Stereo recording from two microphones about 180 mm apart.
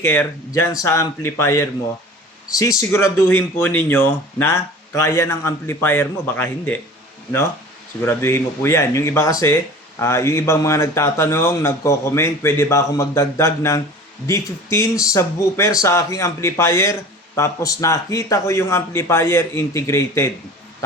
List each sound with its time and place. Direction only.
0.0 s speech: 10° left (ahead or behind)
8.0 s speech: 15° left (ahead or behind)